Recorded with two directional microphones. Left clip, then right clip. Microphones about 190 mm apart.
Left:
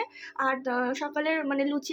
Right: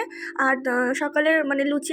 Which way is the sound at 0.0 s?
30° right (ahead or behind).